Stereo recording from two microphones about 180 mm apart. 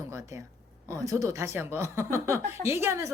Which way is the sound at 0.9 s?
15° right (ahead or behind).